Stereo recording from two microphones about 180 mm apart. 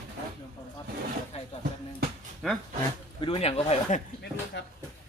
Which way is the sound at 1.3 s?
35° left (ahead or behind).